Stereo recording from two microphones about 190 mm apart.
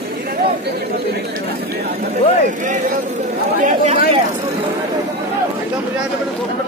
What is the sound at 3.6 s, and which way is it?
Speech, 35° right (ahead or behind).